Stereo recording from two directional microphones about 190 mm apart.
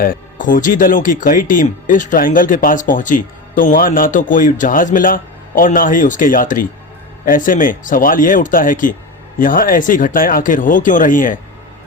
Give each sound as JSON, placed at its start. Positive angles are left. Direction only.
{"t": 0.0, "sound": "speech", "side_deg": 45}